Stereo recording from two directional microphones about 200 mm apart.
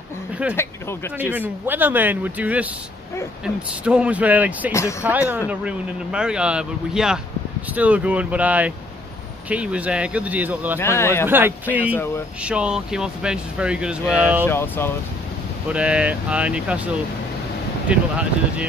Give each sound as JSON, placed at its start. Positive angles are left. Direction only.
{"t": 0.6, "sound": "speech", "side_deg": 10}
{"t": 1.7, "sound": "speech", "side_deg": -10}
{"t": 10.8, "sound": "speech", "side_deg": 15}
{"t": 11.2, "sound": "speech", "side_deg": -10}
{"t": 14.4, "sound": "speech", "side_deg": 10}
{"t": 15.7, "sound": "speech", "side_deg": -5}
{"t": 17.8, "sound": "speech", "side_deg": -5}